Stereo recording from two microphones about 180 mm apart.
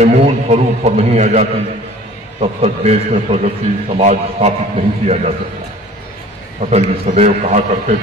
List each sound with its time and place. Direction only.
0.0 s a man's voice: 40° right (ahead or behind)
2.4 s a man's voice: 35° right (ahead or behind)
6.6 s a man's voice: 40° right (ahead or behind)